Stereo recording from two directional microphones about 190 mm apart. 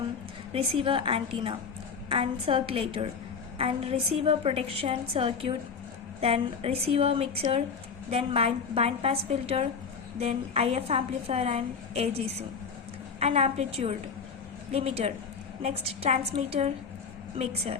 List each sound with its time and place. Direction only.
0.5 s a woman's voice: 30° right (ahead or behind)